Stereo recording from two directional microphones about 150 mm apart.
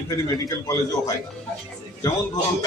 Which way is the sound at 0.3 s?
25° left (ahead or behind).